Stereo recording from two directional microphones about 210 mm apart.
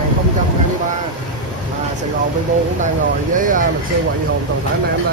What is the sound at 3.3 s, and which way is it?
Speech, 40° right (ahead or behind).